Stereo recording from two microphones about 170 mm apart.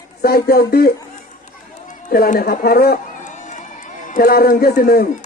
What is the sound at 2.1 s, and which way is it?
A man's voice, 60° left (ahead or behind).